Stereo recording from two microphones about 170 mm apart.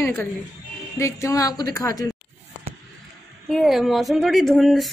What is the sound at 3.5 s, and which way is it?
Speech, centre (ahead or behind).